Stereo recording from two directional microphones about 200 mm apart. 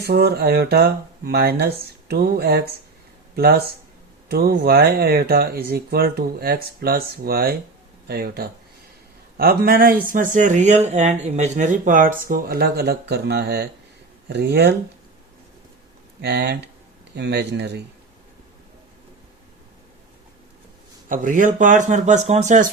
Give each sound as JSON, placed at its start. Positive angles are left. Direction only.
{"t": 0.0, "sound": "speech", "side_deg": -55}
{"t": 16.2, "sound": "speech", "side_deg": -55}
{"t": 21.1, "sound": "speech", "side_deg": -40}